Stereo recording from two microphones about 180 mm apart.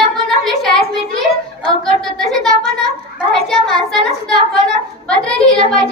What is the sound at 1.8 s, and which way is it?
A woman's voice, centre (ahead or behind).